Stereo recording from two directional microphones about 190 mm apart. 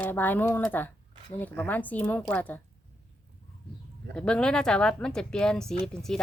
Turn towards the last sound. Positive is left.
turn(degrees=0)  # may be behind; listen again after turning